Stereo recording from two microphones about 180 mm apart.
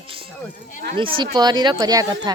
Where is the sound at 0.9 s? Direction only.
30° right (ahead or behind).